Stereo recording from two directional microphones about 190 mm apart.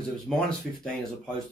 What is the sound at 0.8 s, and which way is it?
Speech, 5° left (ahead or behind).